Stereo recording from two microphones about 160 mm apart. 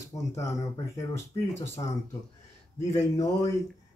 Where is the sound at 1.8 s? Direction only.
25° left (ahead or behind).